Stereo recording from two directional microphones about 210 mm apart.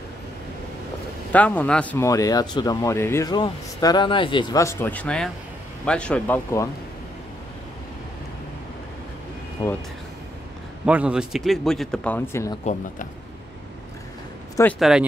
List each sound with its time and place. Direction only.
1.3 s speech: 5° left (ahead or behind)
9.6 s speech: 20° left (ahead or behind)
10.9 s a man's voice: 5° right (ahead or behind); by 12.5 s 10° left (ahead or behind)
14.6 s a man's voice: 5° left (ahead or behind)